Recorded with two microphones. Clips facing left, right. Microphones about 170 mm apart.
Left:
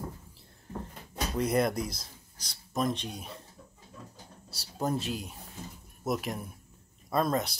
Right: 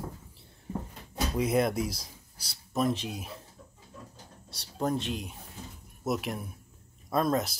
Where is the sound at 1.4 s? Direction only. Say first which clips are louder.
Right 1 dB; centre (ahead or behind).